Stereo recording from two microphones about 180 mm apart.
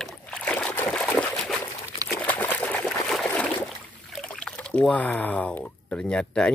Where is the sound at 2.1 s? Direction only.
10° left (ahead or behind).